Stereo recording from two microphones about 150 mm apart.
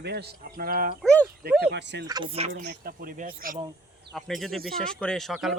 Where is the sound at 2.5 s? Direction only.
85° right.